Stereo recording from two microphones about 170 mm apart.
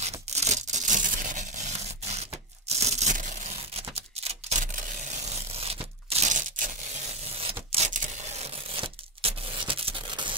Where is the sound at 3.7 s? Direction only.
35° right (ahead or behind).